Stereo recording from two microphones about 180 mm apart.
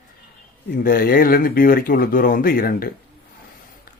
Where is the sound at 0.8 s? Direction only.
55° left (ahead or behind).